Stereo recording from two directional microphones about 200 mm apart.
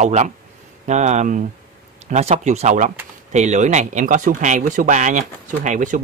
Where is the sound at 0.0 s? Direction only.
35° right (ahead or behind).